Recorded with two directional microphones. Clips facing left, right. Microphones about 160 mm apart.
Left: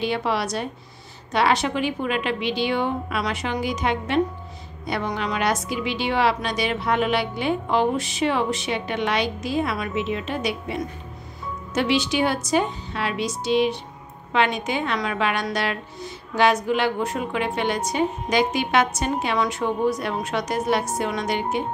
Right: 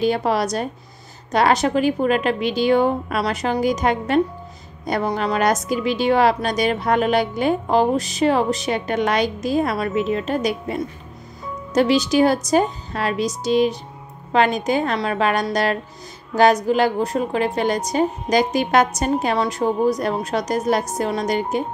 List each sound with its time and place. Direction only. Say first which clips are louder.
0.0 s a woman's voice: right 5 dB; 40° right (ahead or behind)